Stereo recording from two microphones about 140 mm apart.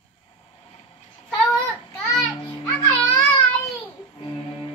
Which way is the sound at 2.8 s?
25° left (ahead or behind).